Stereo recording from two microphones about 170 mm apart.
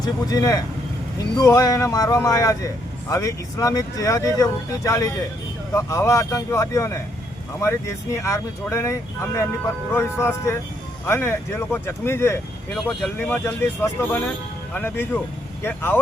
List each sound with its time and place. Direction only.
0.0 s speech: 20° left (ahead or behind)
12.7 s speech: centre (ahead or behind)
13.3 s speech: 15° left (ahead or behind)